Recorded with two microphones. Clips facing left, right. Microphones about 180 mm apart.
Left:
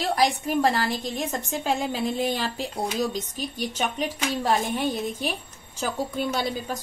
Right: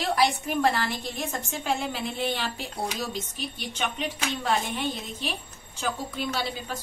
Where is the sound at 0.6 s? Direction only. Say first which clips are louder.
Left 2 dB; 35° left (ahead or behind).